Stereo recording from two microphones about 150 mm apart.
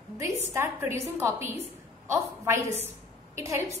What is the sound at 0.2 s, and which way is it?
A woman's voice, 20° right (ahead or behind).